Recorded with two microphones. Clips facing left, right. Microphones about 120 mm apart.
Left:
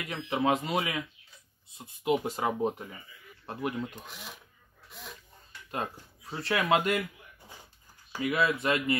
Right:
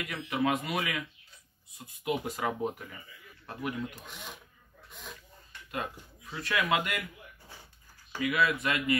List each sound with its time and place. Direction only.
0.0 s speech: 30° left (ahead or behind)
4.1 s speech: centre (ahead or behind)
6.3 s speech: 30° left (ahead or behind)
8.2 s speech: 30° left (ahead or behind)